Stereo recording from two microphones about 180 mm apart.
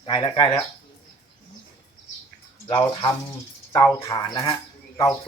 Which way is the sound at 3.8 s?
15° left (ahead or behind).